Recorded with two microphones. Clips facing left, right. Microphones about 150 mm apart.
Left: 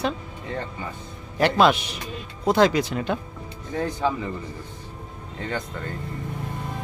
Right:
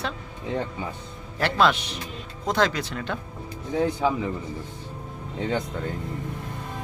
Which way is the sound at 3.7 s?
10° right (ahead or behind).